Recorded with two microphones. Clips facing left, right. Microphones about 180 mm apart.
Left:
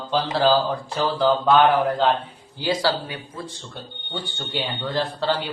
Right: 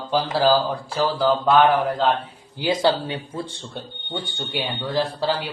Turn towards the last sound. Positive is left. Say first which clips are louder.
# right 1 dB
turn(degrees=-10)  # may be behind; listen again after turning